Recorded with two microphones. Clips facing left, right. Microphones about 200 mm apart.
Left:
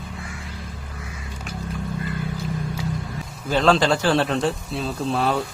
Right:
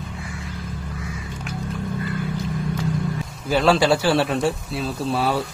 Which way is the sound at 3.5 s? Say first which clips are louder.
Right 1 dB; 5° right (ahead or behind).